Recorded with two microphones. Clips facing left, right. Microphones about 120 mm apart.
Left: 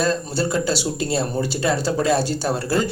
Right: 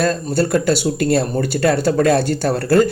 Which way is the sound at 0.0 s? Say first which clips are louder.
Right 4 dB; 55° right (ahead or behind).